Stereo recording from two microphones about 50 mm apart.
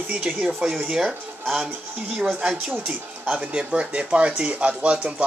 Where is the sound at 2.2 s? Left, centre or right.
Centre.